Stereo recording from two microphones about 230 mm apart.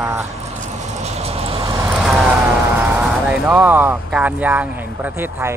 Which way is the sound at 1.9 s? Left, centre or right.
Centre.